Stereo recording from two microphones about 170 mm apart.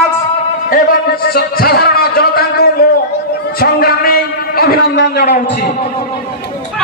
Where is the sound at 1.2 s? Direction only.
60° left (ahead or behind).